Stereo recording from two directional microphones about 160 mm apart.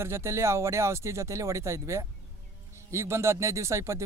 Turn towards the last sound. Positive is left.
turn(degrees=-15)  # may be behind; listen again after turning